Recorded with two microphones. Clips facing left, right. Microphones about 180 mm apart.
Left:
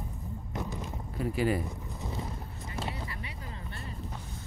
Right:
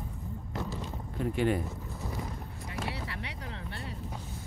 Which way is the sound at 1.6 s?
15° left (ahead or behind).